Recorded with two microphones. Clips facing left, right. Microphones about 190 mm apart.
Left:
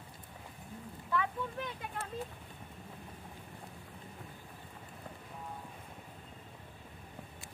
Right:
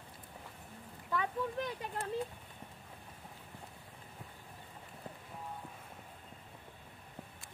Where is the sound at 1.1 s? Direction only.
40° right (ahead or behind).